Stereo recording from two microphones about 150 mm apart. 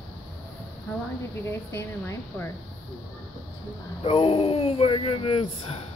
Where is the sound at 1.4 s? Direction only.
20° left (ahead or behind).